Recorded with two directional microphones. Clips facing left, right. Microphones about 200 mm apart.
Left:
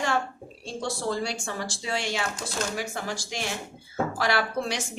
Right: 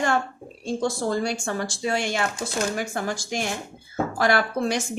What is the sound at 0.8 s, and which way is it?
A woman's voice, 50° right (ahead or behind).